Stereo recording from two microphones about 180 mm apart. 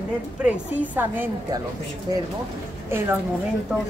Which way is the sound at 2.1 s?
25° right (ahead or behind).